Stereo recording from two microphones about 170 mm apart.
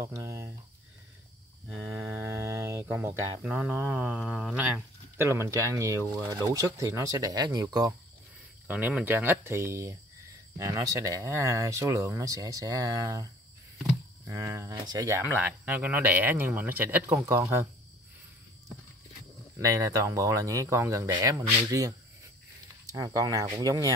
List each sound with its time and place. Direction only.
0.0 s cricket: 20° right (ahead or behind)
2.0 s mantra: 15° right (ahead or behind)
4.2 s speech: centre (ahead or behind); by 7.9 s 20° right (ahead or behind)
8.6 s speech: 10° right (ahead or behind)
19.6 s speech: 20° right (ahead or behind)